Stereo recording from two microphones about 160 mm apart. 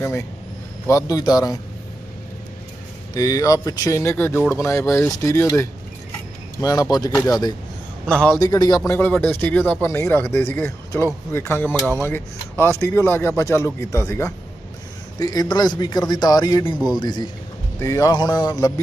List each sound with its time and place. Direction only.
0.8 s speech: 20° left (ahead or behind)
3.2 s speech: 20° left (ahead or behind)
8.1 s speech: 10° left (ahead or behind)
8.4 s speech: 25° left (ahead or behind)
8.8 s speech: 10° left (ahead or behind)